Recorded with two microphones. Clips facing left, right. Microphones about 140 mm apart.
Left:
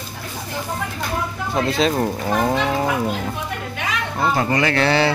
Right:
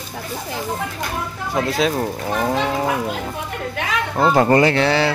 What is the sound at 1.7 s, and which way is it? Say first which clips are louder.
Speech: left 1 dB; 5° right (ahead or behind).